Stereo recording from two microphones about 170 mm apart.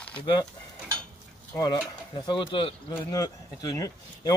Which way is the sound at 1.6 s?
25° left (ahead or behind).